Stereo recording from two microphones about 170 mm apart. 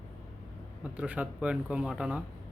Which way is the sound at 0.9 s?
5° right (ahead or behind).